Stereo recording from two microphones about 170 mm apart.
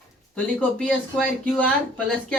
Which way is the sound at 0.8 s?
5° left (ahead or behind).